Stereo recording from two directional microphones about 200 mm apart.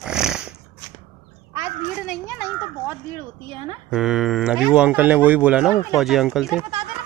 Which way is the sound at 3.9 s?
Centre (ahead or behind).